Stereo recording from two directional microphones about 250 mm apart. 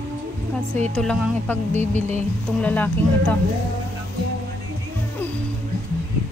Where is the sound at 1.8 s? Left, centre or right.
Right.